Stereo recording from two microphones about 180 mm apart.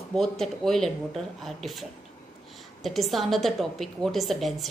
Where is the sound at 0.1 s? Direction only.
5° left (ahead or behind).